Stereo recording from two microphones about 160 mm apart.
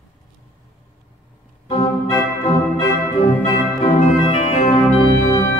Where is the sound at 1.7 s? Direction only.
30° left (ahead or behind).